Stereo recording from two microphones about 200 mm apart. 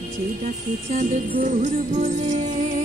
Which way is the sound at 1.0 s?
40° right (ahead or behind).